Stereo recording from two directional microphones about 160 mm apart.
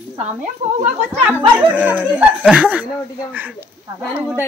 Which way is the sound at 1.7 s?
10° right (ahead or behind).